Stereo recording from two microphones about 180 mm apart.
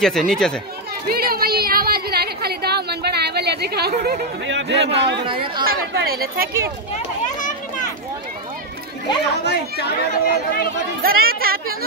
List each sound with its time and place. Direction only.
0.0 s speech: centre (ahead or behind)
1.0 s a sound: 55° right (ahead or behind)
3.9 s a man's voice: 55° right (ahead or behind); by 5.2 s 70° right (ahead or behind)
5.6 s speech: 55° right (ahead or behind)
7.0 s children playing: 45° left (ahead or behind)
9.4 s speech: 65° left (ahead or behind)
11.0 s speech: 55° right (ahead or behind)